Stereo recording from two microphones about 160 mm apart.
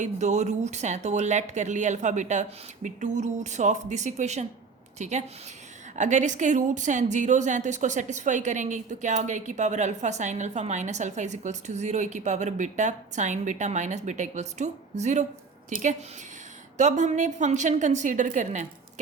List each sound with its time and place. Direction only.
0.0 s a woman's voice: 45° right (ahead or behind)